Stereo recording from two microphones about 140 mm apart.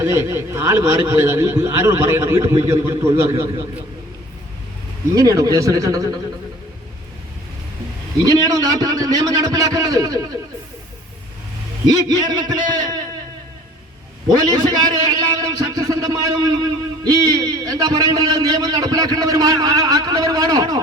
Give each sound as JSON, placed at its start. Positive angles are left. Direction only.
{"t": 0.0, "sound": "a man's voice", "side_deg": -20}
{"t": 5.1, "sound": "a man's voice", "side_deg": -25}
{"t": 8.2, "sound": "a man's voice", "side_deg": -25}
{"t": 11.9, "sound": "a man's voice", "side_deg": -30}
{"t": 14.3, "sound": "a man's voice", "side_deg": -30}